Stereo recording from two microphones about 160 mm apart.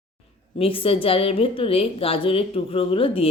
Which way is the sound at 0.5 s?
35° left (ahead or behind).